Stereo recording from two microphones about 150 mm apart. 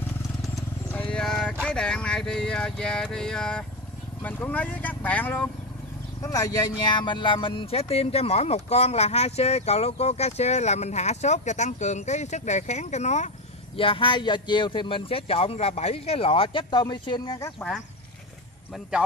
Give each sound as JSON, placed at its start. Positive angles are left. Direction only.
{"t": 0.9, "sound": "speech", "side_deg": 5}
{"t": 6.2, "sound": "speech", "side_deg": 25}
{"t": 13.7, "sound": "speech", "side_deg": 35}
{"t": 17.6, "sound": "speech", "side_deg": 5}